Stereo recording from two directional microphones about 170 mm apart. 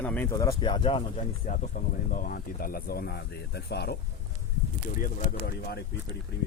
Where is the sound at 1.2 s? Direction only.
50° left (ahead or behind); by 4.0 s 75° left (ahead or behind).